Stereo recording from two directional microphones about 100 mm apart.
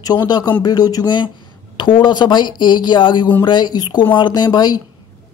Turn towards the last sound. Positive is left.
turn(degrees=45)  # may be behind; listen again after turning